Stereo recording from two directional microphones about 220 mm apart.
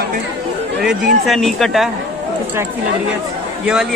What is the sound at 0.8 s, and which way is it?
Speech, centre (ahead or behind).